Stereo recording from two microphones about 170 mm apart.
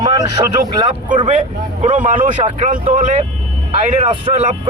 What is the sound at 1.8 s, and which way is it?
Speech, 50° right (ahead or behind).